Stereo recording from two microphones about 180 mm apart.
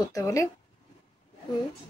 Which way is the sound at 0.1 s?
15° left (ahead or behind).